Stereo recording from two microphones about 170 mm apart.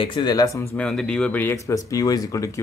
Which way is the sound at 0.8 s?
5° left (ahead or behind).